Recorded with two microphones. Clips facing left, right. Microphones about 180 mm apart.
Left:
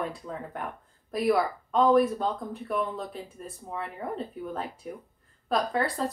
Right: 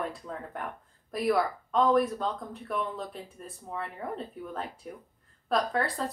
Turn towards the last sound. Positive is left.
turn(degrees=0)  # may be behind; listen again after turning